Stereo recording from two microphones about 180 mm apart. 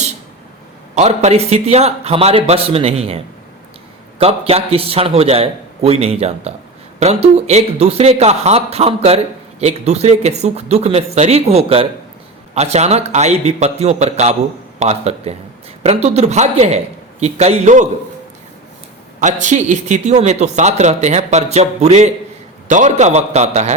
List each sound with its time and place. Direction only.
0.9 s speech: 40° right (ahead or behind)
4.2 s speech: 35° right (ahead or behind)
19.2 s speech: 40° right (ahead or behind)